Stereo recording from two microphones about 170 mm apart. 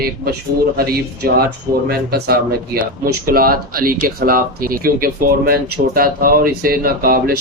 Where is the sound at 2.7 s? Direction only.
55° right (ahead or behind).